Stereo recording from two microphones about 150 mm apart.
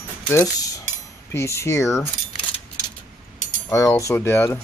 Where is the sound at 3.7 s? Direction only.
20° left (ahead or behind).